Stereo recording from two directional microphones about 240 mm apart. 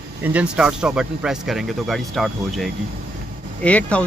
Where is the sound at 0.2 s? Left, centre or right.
Centre.